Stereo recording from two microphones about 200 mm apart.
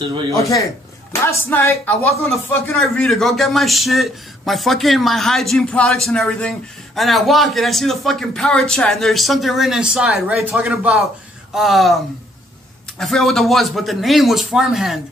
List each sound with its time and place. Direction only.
0.4 s speech: 15° left (ahead or behind)
2.7 s speech: centre (ahead or behind)
13.0 s speech: centre (ahead or behind)